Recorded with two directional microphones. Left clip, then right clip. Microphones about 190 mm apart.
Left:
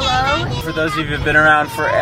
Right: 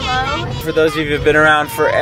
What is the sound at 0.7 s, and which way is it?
Speech, 35° right (ahead or behind).